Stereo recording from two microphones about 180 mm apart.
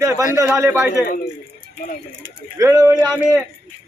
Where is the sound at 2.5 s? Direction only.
20° right (ahead or behind).